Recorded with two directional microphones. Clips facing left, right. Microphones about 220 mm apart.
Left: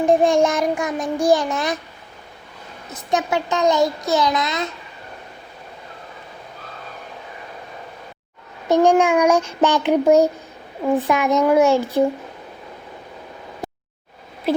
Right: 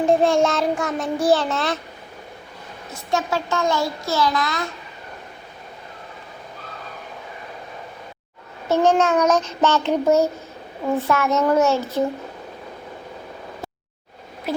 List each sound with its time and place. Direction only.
0.0 s a child's voice: 15° left (ahead or behind)
2.9 s a child's voice: 20° left (ahead or behind)
8.7 s a child's voice: 15° left (ahead or behind)